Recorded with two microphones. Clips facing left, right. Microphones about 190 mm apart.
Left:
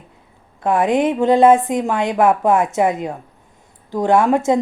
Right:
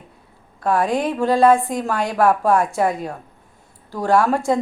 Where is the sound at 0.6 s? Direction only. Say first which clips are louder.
Left 3 dB; 20° left (ahead or behind).